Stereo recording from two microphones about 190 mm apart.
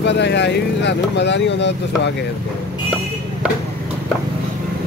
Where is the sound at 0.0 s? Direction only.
65° left (ahead or behind).